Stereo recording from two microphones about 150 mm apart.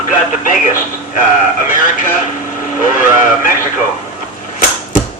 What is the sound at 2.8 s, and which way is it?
Speech, 60° left (ahead or behind).